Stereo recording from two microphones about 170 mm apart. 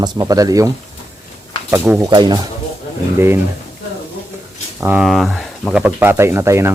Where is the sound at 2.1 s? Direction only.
25° right (ahead or behind).